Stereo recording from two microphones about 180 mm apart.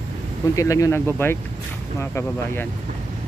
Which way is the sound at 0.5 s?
15° left (ahead or behind).